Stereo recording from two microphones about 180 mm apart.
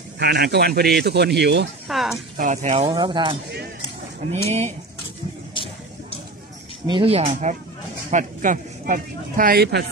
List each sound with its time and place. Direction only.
0.2 s speech: 65° right (ahead or behind)
1.9 s speech: centre (ahead or behind)
2.3 s speech: 45° right (ahead or behind)
2.8 s speech: 25° right (ahead or behind)
4.5 s speech: 40° right (ahead or behind)
5.5 s vehicle: 30° left (ahead or behind)
6.9 s speech: 30° right (ahead or behind)
8.1 s speech: 45° right (ahead or behind); by 9.8 s 60° right (ahead or behind)